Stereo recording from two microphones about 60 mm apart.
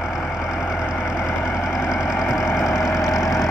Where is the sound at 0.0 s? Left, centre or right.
Centre.